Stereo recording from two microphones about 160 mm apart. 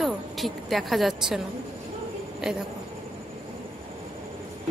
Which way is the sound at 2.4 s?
5° right (ahead or behind).